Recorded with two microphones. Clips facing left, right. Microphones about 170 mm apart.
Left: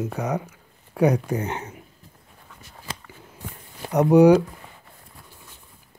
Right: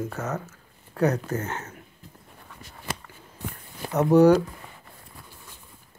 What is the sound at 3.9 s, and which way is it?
Speech, 10° left (ahead or behind).